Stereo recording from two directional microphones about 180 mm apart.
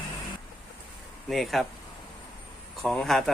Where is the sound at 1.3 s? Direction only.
Centre (ahead or behind).